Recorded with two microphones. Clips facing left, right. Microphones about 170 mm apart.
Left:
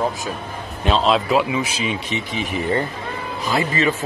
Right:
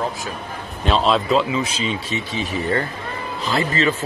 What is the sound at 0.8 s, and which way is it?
Speech, centre (ahead or behind).